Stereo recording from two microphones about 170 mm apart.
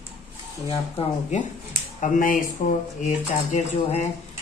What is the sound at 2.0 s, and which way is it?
Speech, 50° left (ahead or behind).